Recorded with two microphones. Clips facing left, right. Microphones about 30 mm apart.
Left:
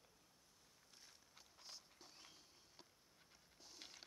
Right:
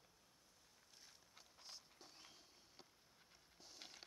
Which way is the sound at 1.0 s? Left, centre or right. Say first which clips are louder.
Right 1 dB; centre.